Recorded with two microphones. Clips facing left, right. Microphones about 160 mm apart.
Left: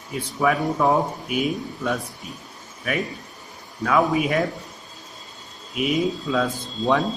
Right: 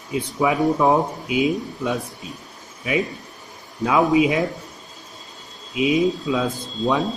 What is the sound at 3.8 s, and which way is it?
Speech, 20° right (ahead or behind).